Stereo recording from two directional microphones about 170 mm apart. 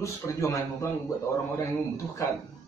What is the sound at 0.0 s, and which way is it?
Speech, 15° left (ahead or behind).